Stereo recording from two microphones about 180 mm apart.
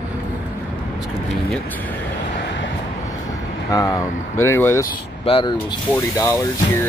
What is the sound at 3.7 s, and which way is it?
Speech, 20° left (ahead or behind).